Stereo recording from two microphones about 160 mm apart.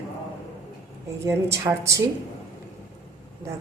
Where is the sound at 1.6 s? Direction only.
20° right (ahead or behind).